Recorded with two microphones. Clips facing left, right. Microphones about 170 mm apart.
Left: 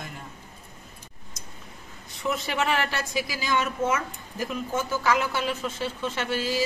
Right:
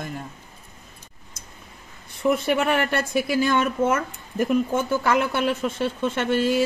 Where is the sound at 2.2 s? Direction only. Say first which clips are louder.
Right 7 dB; 55° right (ahead or behind).